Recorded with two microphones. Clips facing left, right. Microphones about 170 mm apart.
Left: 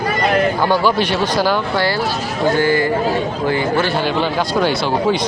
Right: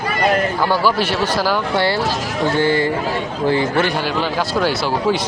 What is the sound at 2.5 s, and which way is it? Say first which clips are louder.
Speech: even; 25° right (ahead or behind).